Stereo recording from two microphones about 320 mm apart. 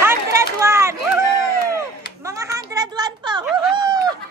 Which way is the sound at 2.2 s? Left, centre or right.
Centre.